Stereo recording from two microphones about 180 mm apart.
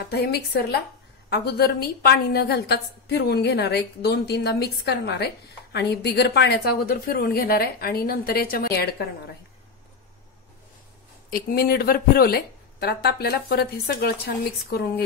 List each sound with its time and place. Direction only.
0.1 s a woman's voice: 65° left (ahead or behind)
11.2 s a woman's voice: 55° left (ahead or behind)